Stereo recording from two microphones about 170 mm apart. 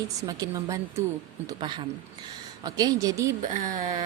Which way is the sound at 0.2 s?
20° right (ahead or behind).